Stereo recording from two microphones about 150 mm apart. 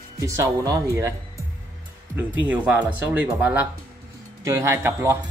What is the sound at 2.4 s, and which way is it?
Speech, 10° right (ahead or behind).